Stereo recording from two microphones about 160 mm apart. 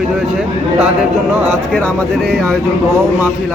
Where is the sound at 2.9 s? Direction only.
15° right (ahead or behind).